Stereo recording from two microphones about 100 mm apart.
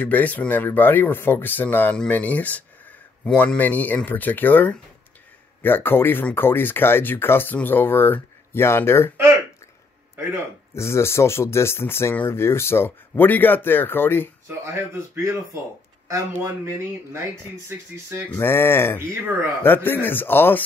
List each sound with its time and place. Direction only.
0.0 s speech: 15° left (ahead or behind)
10.7 s speech: 25° left (ahead or behind)
14.6 s speech: 30° right (ahead or behind)
18.4 s speech: 25° left (ahead or behind)